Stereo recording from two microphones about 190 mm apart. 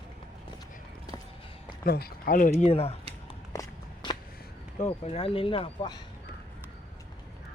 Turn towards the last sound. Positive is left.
turn(degrees=30)  # may be behind; listen again after turning